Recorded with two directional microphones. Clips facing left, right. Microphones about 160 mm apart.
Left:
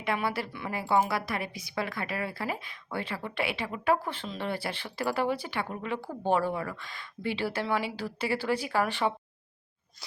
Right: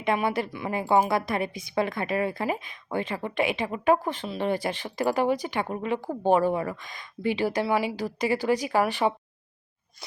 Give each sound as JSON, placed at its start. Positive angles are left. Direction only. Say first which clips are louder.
{"t": 0.0, "sound": "a woman's voice", "louder": "right 5 dB", "side_deg": -20}